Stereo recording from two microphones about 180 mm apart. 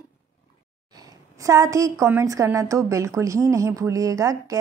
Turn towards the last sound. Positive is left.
turn(degrees=-20)  # may be behind; listen again after turning